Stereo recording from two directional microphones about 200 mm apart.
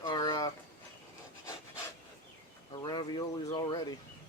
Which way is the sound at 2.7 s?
20° left (ahead or behind).